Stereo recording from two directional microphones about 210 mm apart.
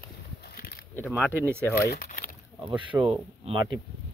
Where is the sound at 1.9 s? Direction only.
45° left (ahead or behind).